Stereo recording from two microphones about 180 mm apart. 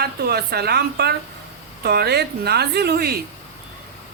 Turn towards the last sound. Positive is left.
turn(degrees=-60)  # may be behind; listen again after turning